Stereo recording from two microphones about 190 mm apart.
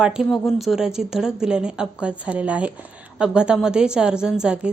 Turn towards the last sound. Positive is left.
turn(degrees=-5)  # may be behind; listen again after turning